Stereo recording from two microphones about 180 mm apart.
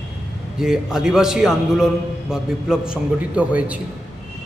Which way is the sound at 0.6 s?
5° right (ahead or behind).